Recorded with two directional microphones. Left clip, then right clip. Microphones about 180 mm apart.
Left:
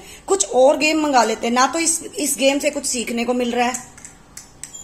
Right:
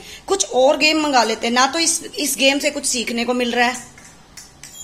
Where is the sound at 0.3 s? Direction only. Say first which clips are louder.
Left 1 dB; 15° left (ahead or behind).